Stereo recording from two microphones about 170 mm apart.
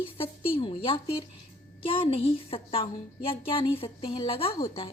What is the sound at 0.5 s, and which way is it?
A woman's voice, 30° left (ahead or behind).